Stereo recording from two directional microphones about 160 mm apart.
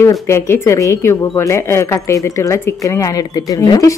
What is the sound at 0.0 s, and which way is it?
Speech, 15° left (ahead or behind).